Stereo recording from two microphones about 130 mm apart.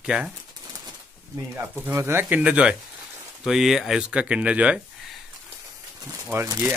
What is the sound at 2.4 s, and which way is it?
Speech, 5° right (ahead or behind).